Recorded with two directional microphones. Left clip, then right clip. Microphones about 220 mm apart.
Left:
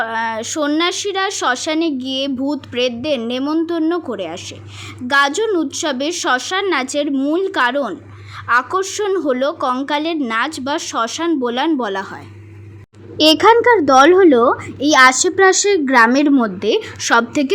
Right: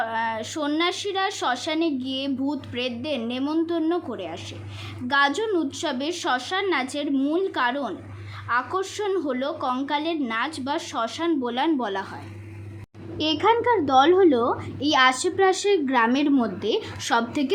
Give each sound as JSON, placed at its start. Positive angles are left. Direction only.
{"t": 0.0, "sound": "a woman's voice", "side_deg": 25}
{"t": 13.1, "sound": "a woman's voice", "side_deg": 30}